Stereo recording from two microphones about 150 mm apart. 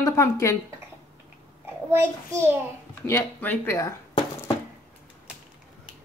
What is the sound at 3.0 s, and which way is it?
Speech, 15° left (ahead or behind).